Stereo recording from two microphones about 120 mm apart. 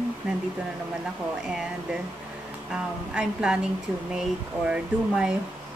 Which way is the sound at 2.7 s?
5° right (ahead or behind).